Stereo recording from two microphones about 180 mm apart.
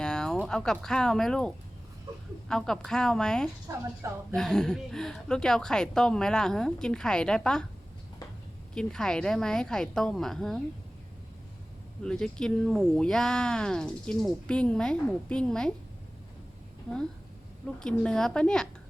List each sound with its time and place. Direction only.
0.0 s a sound: 5° left (ahead or behind)
0.4 s speech: 5° left (ahead or behind)
3.7 s a woman's voice: 15° right (ahead or behind)
4.4 s speech: 5° left (ahead or behind)
8.7 s speech: 5° left (ahead or behind)
12.0 s speech: 5° left (ahead or behind)
17.7 s speech: 5° left (ahead or behind)